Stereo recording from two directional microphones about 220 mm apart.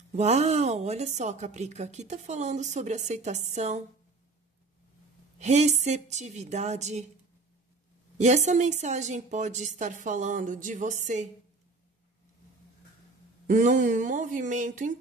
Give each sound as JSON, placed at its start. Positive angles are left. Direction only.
{"t": 0.1, "sound": "a woman's voice", "side_deg": -30}
{"t": 5.4, "sound": "a woman's voice", "side_deg": -30}
{"t": 8.2, "sound": "a woman's voice", "side_deg": -30}
{"t": 13.5, "sound": "a woman's voice", "side_deg": -35}